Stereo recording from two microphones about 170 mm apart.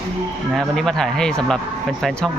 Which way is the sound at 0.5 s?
Centre (ahead or behind).